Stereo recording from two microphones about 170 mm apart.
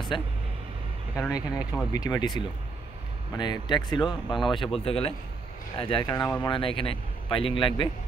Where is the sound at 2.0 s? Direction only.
25° left (ahead or behind).